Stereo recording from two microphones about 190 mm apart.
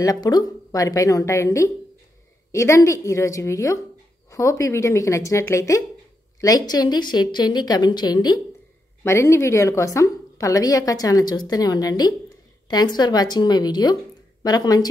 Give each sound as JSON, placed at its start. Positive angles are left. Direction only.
{"t": 0.0, "sound": "a woman's voice", "side_deg": 20}